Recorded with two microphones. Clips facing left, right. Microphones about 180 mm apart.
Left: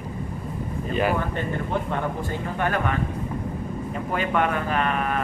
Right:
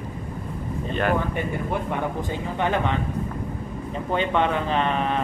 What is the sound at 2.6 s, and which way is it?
Speech, 20° right (ahead or behind).